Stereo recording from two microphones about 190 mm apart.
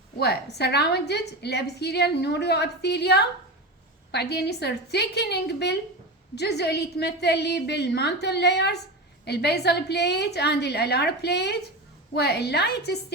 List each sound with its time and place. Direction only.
0.6 s a woman's voice: 60° left (ahead or behind)